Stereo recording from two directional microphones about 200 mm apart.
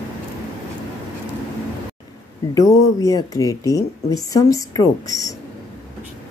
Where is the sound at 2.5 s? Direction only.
15° left (ahead or behind).